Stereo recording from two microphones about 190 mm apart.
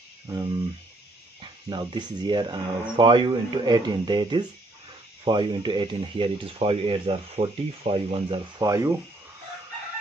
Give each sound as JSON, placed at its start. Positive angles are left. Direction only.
{"t": 1.7, "sound": "speech", "side_deg": -25}
{"t": 8.6, "sound": "speech", "side_deg": -15}